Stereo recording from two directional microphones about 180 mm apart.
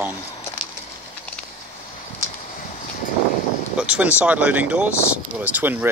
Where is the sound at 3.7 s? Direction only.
5° right (ahead or behind).